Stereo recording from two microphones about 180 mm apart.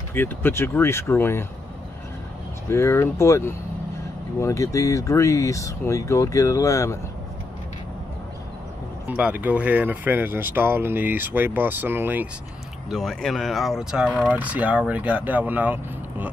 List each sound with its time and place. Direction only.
0.1 s speech: 10° left (ahead or behind)
2.7 s speech: 15° left (ahead or behind)
9.0 s speech: 10° right (ahead or behind)
12.9 s speech: centre (ahead or behind)